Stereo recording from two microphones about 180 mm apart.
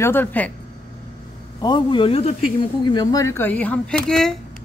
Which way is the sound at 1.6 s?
25° left (ahead or behind).